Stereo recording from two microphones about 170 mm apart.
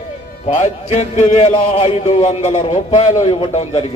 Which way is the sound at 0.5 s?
40° left (ahead or behind).